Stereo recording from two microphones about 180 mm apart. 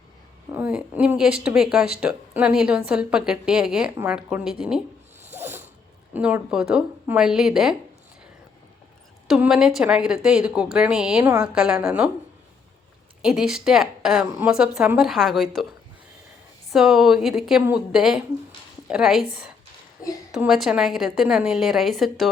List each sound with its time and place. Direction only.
0.5 s speech: 10° right (ahead or behind)
5.3 s zipper: 15° right (ahead or behind)
6.1 s speech: 10° right (ahead or behind)
9.2 s speech: centre (ahead or behind)
13.2 s speech: 5° right (ahead or behind)
16.7 s a woman's voice: centre (ahead or behind)